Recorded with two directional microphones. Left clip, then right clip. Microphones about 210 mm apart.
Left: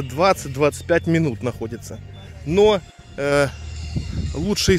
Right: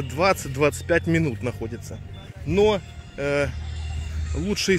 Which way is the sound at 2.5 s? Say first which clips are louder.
Left 4 dB; 45° left (ahead or behind).